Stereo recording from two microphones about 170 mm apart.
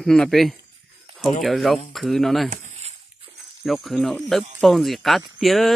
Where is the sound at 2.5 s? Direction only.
40° right (ahead or behind).